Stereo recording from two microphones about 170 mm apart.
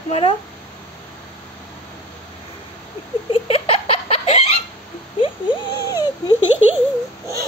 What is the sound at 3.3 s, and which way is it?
Laughter, 35° left (ahead or behind).